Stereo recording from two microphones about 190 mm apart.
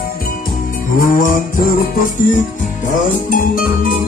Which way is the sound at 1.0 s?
45° left (ahead or behind).